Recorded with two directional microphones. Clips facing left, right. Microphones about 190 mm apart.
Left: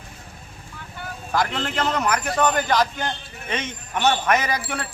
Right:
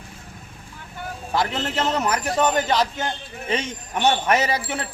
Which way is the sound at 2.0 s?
25° right (ahead or behind).